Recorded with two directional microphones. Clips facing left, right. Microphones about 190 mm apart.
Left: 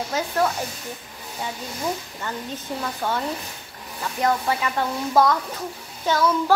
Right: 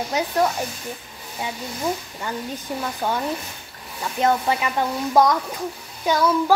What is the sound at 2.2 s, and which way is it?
Speech, 15° right (ahead or behind).